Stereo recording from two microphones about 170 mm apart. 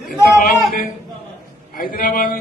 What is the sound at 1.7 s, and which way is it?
Speech, 55° left (ahead or behind).